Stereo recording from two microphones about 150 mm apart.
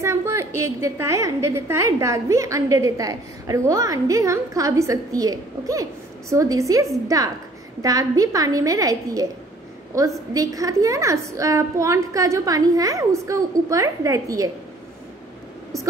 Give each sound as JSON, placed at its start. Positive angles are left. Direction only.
{"t": 0.0, "sound": "a woman's voice", "side_deg": -20}
{"t": 10.3, "sound": "a woman's voice", "side_deg": -25}